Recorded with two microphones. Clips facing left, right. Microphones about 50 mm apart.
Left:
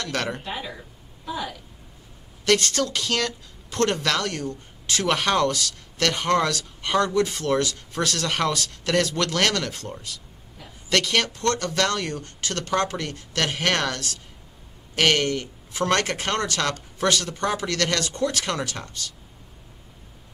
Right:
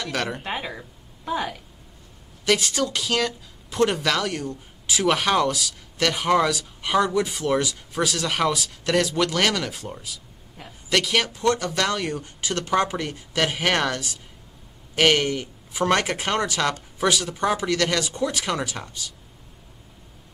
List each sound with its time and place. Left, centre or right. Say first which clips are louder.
0.0 s speech: even; centre
0.4 s speech: right 3 dB; right
2.4 s speech: left 1 dB; centre